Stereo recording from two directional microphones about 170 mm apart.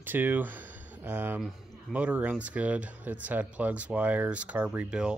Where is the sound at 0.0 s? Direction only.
10° right (ahead or behind).